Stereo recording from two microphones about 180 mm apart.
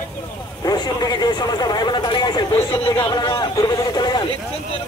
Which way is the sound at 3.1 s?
25° left (ahead or behind).